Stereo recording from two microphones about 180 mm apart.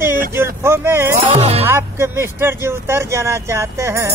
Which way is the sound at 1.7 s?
15° right (ahead or behind).